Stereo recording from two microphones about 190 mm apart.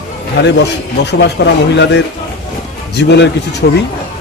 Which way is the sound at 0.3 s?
65° left (ahead or behind).